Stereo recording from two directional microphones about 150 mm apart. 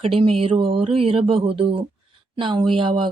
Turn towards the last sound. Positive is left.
turn(degrees=-35)  # may be behind; listen again after turning